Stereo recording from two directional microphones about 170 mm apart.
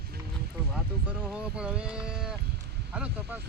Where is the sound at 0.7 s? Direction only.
10° right (ahead or behind).